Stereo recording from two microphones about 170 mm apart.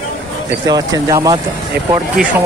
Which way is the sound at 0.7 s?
20° right (ahead or behind).